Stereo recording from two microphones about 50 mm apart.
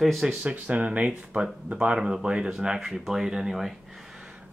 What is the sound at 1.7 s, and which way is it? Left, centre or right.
Speech, centre.